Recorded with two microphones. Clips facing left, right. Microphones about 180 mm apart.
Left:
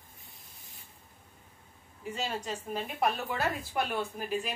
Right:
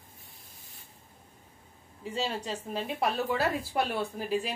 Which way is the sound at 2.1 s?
30° right (ahead or behind).